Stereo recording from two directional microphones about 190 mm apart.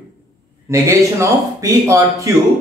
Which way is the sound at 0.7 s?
15° right (ahead or behind).